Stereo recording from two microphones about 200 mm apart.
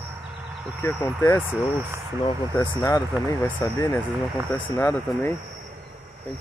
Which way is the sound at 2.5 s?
15° left (ahead or behind).